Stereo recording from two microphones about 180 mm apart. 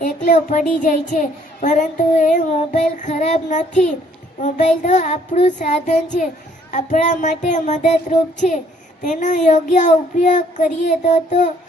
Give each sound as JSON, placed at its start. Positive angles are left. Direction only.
{"t": 0.0, "sound": "child singing", "side_deg": 45}